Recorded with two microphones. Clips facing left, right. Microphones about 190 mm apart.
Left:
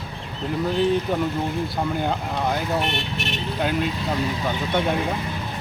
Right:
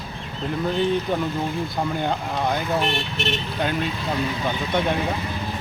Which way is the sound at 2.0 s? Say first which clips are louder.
Even; 5° left (ahead or behind).